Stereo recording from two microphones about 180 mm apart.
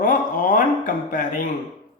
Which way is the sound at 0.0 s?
50° left (ahead or behind).